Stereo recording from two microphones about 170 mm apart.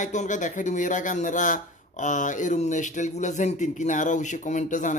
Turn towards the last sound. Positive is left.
turn(degrees=45)  # may be behind; listen again after turning